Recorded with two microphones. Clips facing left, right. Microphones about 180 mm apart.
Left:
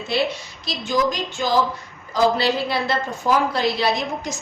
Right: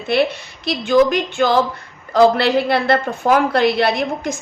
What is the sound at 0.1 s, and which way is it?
A woman's voice, 60° right (ahead or behind).